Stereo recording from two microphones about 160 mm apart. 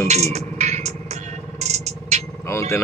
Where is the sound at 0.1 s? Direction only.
45° right (ahead or behind).